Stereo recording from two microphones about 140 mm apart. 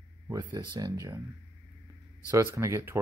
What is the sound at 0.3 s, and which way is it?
Speech, 35° right (ahead or behind).